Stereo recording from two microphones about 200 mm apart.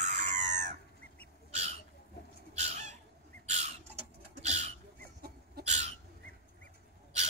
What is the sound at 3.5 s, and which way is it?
Bird, 35° right (ahead or behind).